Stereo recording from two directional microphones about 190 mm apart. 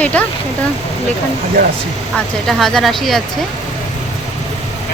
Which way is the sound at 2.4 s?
Centre (ahead or behind).